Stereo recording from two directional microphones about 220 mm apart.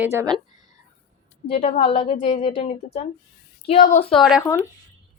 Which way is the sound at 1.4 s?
30° left (ahead or behind).